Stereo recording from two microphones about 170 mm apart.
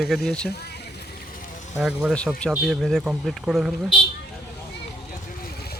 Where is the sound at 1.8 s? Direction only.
5° right (ahead or behind).